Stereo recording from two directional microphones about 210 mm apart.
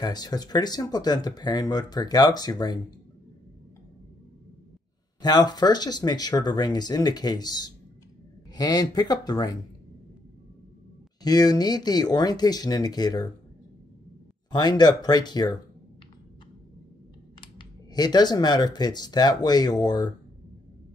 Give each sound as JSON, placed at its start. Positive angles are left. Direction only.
{"t": 0.0, "sound": "speech", "side_deg": 20}
{"t": 5.2, "sound": "speech", "side_deg": 20}
{"t": 11.2, "sound": "speech", "side_deg": 20}
{"t": 14.5, "sound": "speech", "side_deg": 20}
{"t": 17.4, "sound": "speech", "side_deg": 20}